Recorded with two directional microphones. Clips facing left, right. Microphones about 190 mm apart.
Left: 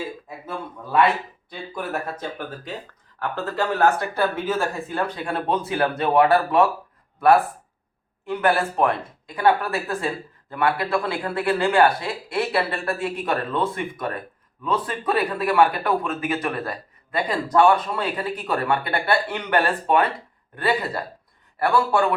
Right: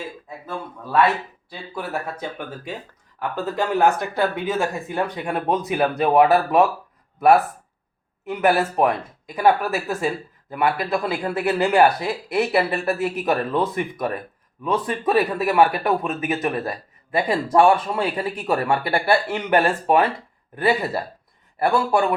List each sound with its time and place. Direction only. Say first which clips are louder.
0.3 s a man's voice: right 1 dB; centre (ahead or behind); by 6.7 s 20° right (ahead or behind)
8.3 s speech: right 2 dB; 20° right (ahead or behind)